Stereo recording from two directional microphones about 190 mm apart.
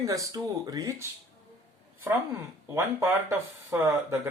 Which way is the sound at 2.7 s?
15° right (ahead or behind).